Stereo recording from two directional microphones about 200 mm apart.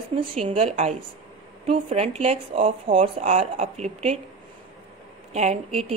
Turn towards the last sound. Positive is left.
turn(degrees=-30)  # may be behind; listen again after turning